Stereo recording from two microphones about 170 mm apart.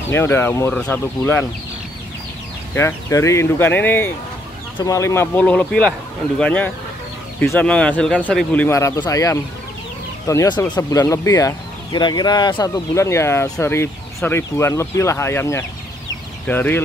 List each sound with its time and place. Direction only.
0.1 s speech: 15° left (ahead or behind)
2.7 s speech: 15° left (ahead or behind)